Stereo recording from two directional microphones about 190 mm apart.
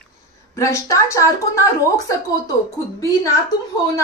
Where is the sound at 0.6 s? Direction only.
15° left (ahead or behind).